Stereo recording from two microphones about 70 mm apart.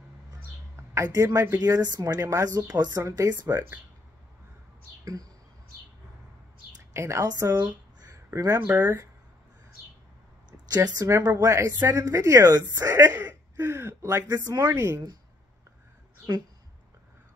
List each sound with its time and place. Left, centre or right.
0.7 s speech: right
1.6 s speech: right
2.1 s speech: right
3.0 s a woman's voice: right
6.9 s a woman's voice: right
8.5 s speech: right
10.7 s a woman's voice: right